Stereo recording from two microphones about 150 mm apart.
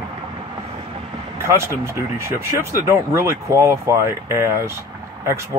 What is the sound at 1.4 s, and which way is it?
Speech, 15° right (ahead or behind).